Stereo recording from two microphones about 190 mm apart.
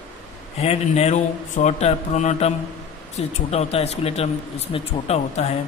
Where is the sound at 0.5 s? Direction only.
35° left (ahead or behind).